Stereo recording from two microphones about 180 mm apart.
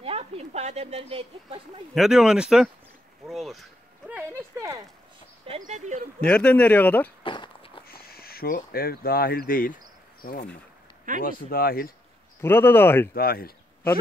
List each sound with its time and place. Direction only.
0.0 s speech: 35° right (ahead or behind)
2.0 s speech: 5° right (ahead or behind)
4.1 s speech: 15° right (ahead or behind)
5.6 s speech: 40° right (ahead or behind)
6.2 s speech: 5° left (ahead or behind)
7.2 s walk: 25° left (ahead or behind)
7.9 s speech: 55° left (ahead or behind)
12.4 s speech: 10° left (ahead or behind)
13.1 s speech: 55° left (ahead or behind)